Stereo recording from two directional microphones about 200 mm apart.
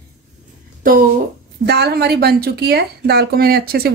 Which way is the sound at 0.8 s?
45° right (ahead or behind).